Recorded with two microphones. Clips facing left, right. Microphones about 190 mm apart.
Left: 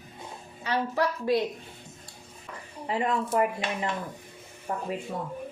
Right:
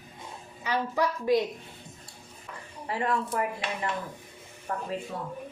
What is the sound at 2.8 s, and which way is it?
A woman's voice, 20° left (ahead or behind).